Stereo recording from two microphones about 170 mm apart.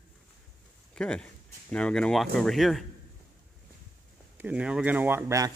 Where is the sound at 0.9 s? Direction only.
5° left (ahead or behind).